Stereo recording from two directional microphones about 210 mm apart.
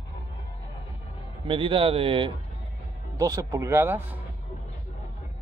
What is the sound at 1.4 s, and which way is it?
Speech, 25° right (ahead or behind).